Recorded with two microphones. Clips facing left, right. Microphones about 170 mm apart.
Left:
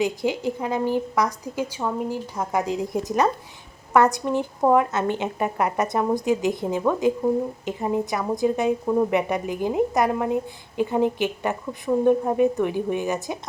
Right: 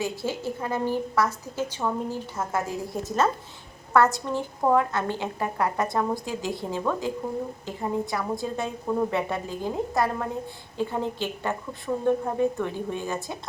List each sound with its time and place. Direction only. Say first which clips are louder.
0.0 s a woman's voice: left 6 dB; 15° left (ahead or behind)